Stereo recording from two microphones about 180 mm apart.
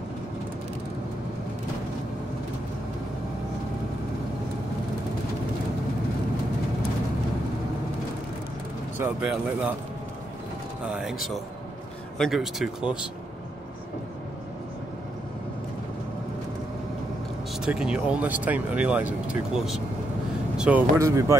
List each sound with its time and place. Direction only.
8.9 s speech: 10° right (ahead or behind)
10.9 s speech: 5° right (ahead or behind)
12.2 s speech: centre (ahead or behind)
17.6 s speech: 5° right (ahead or behind)
20.5 s a sound: 5° right (ahead or behind)
21.0 s speech: 15° right (ahead or behind)